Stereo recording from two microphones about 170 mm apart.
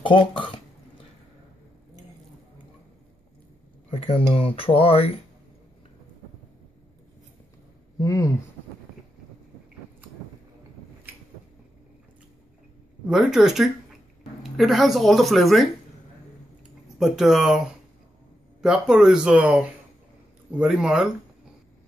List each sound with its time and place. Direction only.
0.0 s speech: 30° left (ahead or behind)
3.9 s speech: 35° left (ahead or behind)
8.0 s speech: 20° left (ahead or behind)
13.1 s speech: centre (ahead or behind)
17.0 s speech: 5° right (ahead or behind)
18.6 s speech: 5° right (ahead or behind)